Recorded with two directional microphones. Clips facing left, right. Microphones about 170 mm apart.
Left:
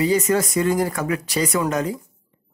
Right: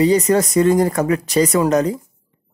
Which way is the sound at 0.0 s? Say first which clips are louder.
Right 5 dB; 35° right (ahead or behind).